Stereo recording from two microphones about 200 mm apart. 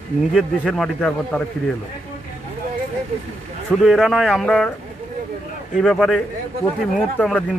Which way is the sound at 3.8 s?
Centre (ahead or behind).